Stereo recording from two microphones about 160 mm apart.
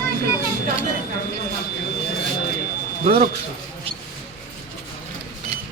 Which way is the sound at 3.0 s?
55° right (ahead or behind).